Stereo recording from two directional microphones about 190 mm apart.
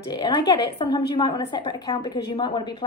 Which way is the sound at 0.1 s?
20° left (ahead or behind).